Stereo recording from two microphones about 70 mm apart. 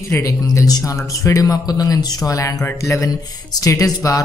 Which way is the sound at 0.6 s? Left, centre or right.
Left.